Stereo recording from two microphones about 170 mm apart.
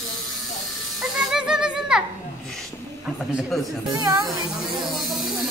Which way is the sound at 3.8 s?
20° right (ahead or behind).